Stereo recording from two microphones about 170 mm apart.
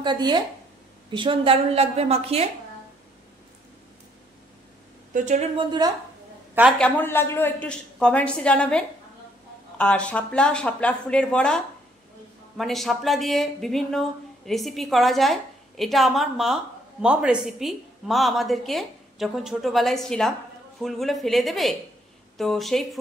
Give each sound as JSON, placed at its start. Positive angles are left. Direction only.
{"t": 0.0, "sound": "a woman's voice", "side_deg": -25}
{"t": 5.1, "sound": "speech", "side_deg": -45}
{"t": 5.6, "sound": "speech", "side_deg": -25}
{"t": 6.8, "sound": "a woman's voice", "side_deg": 10}